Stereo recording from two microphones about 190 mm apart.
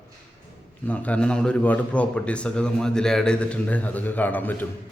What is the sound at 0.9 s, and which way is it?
A man's voice, 5° left (ahead or behind).